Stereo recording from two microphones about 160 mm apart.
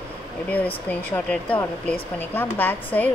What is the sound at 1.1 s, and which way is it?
Speech, 10° left (ahead or behind).